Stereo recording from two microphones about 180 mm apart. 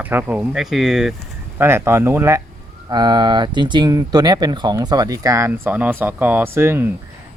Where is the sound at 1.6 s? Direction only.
15° right (ahead or behind).